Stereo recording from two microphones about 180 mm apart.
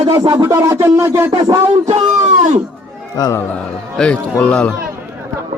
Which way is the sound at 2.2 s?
40° right (ahead or behind).